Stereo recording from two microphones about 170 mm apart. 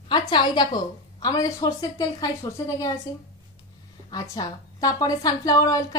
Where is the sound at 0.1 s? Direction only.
25° left (ahead or behind).